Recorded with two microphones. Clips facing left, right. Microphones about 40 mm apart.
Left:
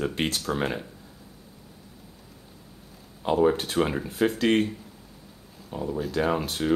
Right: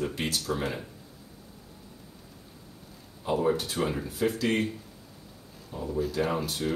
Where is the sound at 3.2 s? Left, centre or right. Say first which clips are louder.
Left 4 dB; left.